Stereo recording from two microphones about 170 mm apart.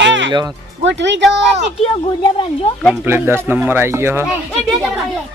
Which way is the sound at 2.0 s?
30° left (ahead or behind).